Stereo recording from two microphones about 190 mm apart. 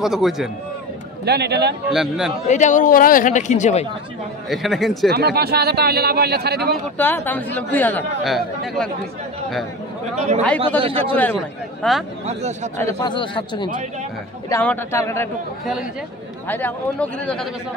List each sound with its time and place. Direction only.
0.0 s speech: centre (ahead or behind)
1.2 s speech: 60° right (ahead or behind)
1.9 s speech: centre (ahead or behind)
2.4 s speech: 40° left (ahead or behind)
4.5 s speech: centre (ahead or behind)
5.1 s speech: 55° right (ahead or behind)
7.0 s speech: 10° left (ahead or behind)
10.1 s a man's voice: 35° right (ahead or behind)
11.1 s speech: 5° left (ahead or behind)
12.3 s speech: 35° right (ahead or behind)
12.7 s speech: 20° left (ahead or behind)
14.5 s speech: 10° left (ahead or behind)
16.4 s speech: 10° left (ahead or behind)